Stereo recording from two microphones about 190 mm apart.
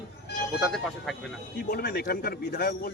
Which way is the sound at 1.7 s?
55° left (ahead or behind).